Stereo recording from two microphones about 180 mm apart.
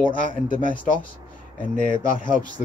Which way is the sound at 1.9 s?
50° left (ahead or behind).